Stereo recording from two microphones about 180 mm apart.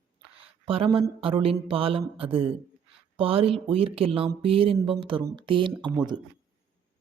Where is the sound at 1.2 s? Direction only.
30° right (ahead or behind).